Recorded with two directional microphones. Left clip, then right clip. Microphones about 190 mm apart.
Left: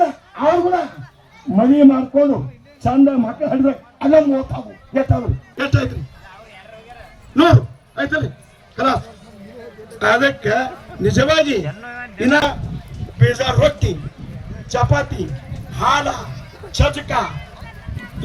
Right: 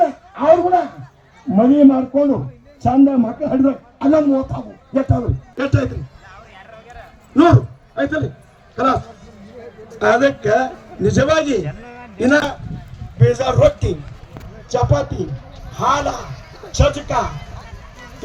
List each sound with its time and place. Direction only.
0.3 s a sound: 60° right (ahead or behind)
1.5 s a man's voice: 60° right (ahead or behind)
7.3 s a man's voice: 50° right (ahead or behind)
10.0 s a man's voice: 45° right (ahead or behind)
11.6 s a sound: 10° left (ahead or behind)
12.1 s a man's voice: 45° right (ahead or behind)